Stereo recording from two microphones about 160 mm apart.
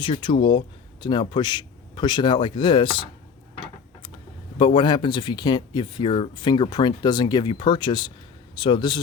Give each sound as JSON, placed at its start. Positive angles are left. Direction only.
{"t": 0.0, "sound": "speech", "side_deg": 30}
{"t": 4.5, "sound": "speech", "side_deg": 30}